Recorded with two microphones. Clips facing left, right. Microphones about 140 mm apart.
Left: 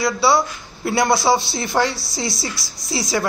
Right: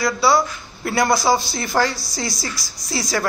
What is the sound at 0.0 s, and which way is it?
Speech, 25° left (ahead or behind).